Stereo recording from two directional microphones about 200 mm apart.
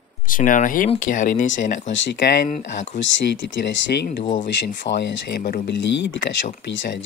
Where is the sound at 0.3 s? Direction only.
40° left (ahead or behind).